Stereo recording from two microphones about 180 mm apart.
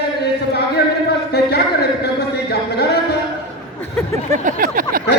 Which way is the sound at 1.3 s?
65° left (ahead or behind).